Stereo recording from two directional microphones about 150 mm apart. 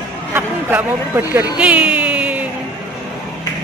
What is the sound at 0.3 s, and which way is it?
Speech, 15° right (ahead or behind).